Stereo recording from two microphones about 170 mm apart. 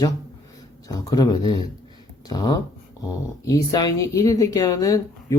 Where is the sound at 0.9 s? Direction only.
20° left (ahead or behind).